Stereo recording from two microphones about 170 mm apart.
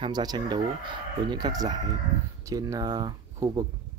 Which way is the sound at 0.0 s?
25° right (ahead or behind).